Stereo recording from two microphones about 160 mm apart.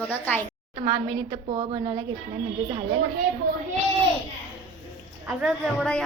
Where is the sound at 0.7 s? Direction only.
35° right (ahead or behind).